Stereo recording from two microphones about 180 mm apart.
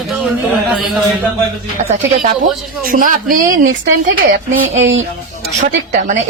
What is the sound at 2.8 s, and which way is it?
Speech, 50° right (ahead or behind).